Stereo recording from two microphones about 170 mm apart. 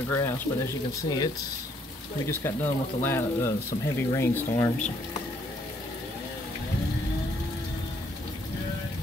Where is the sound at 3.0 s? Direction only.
15° left (ahead or behind).